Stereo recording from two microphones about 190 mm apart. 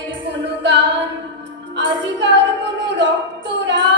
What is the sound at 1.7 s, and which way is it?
Music, 70° right (ahead or behind).